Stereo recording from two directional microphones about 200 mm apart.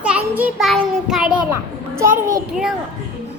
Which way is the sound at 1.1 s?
5° right (ahead or behind).